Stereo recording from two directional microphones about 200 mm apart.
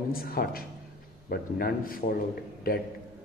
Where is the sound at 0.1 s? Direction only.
50° left (ahead or behind).